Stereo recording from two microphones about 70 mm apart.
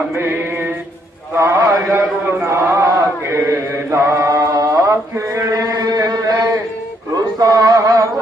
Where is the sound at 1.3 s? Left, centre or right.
Right.